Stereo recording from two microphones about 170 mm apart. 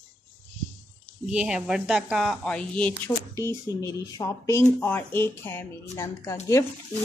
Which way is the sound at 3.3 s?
20° left (ahead or behind).